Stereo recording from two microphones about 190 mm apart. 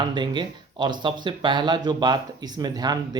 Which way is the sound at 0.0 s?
25° right (ahead or behind).